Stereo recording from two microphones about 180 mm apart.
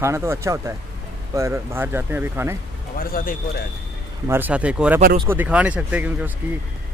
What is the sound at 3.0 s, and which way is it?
Speech, 50° left (ahead or behind).